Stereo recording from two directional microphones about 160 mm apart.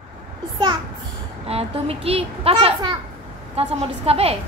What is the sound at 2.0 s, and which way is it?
A child's voice, 35° right (ahead or behind).